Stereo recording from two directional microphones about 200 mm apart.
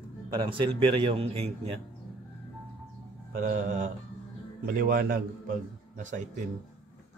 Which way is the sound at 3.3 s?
45° right (ahead or behind).